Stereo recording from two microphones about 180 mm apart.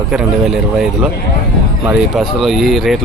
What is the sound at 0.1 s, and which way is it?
Speech, 5° right (ahead or behind).